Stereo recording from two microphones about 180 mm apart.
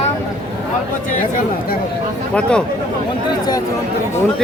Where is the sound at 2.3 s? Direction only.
5° left (ahead or behind).